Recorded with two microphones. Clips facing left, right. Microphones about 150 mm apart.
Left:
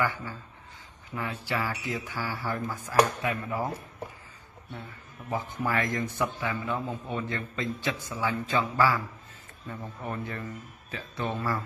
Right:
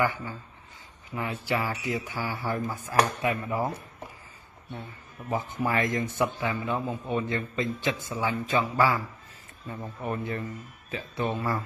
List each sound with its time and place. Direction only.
0.0 s a man's voice: 15° right (ahead or behind)
5.7 s a man's voice: 20° right (ahead or behind)